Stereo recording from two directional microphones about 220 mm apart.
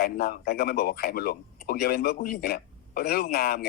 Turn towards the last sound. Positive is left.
turn(degrees=45)  # may be behind; listen again after turning